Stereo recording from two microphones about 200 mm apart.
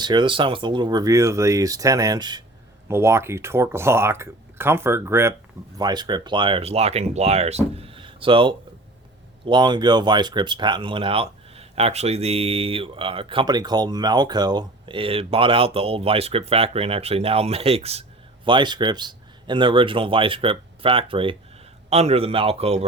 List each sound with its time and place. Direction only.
0.0 s a man's voice: 25° right (ahead or behind)